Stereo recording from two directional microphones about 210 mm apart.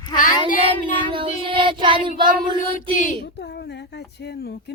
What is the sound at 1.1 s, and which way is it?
Child singing, 25° right (ahead or behind).